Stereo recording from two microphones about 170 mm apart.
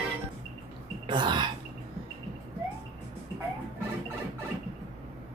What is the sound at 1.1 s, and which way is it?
Speech, 25° right (ahead or behind).